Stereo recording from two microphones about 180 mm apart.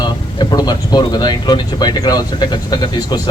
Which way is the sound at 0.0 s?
20° left (ahead or behind).